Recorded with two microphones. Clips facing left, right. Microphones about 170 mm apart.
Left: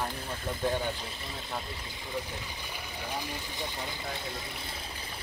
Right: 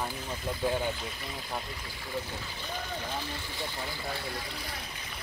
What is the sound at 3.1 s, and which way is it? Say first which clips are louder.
Speech: even; 15° left (ahead or behind).